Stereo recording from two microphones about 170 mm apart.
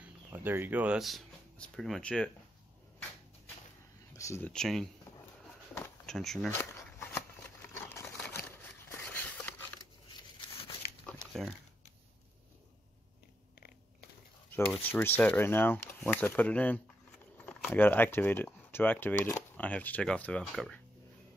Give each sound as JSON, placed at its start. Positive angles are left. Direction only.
{"t": 0.0, "sound": "speech", "side_deg": -10}
{"t": 4.1, "sound": "speech", "side_deg": 15}
{"t": 4.5, "sound": "speech", "side_deg": 5}
{"t": 6.0, "sound": "speech", "side_deg": 5}
{"t": 6.5, "sound": "a sound", "side_deg": 15}
{"t": 14.9, "sound": "speech", "side_deg": 10}